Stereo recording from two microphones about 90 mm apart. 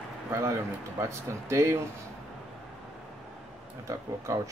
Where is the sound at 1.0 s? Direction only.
35° right (ahead or behind).